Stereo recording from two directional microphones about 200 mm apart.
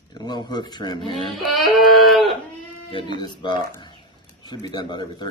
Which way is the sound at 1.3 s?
Centre (ahead or behind).